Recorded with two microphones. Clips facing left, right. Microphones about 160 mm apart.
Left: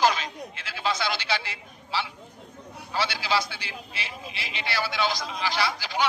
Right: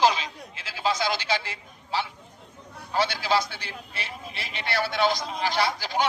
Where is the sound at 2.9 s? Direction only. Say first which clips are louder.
Right 3 dB; 50° right (ahead or behind).